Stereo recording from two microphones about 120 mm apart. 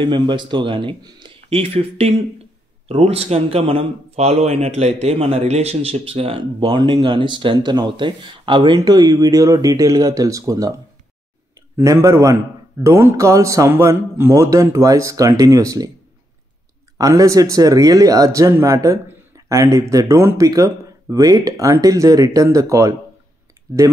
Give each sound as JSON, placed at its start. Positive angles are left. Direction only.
{"t": 0.0, "sound": "speech", "side_deg": -45}
{"t": 11.7, "sound": "speech", "side_deg": -25}
{"t": 17.0, "sound": "speech", "side_deg": -25}